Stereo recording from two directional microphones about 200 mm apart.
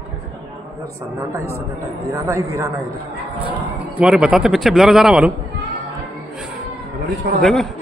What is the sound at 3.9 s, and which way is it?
Speech, 5° right (ahead or behind).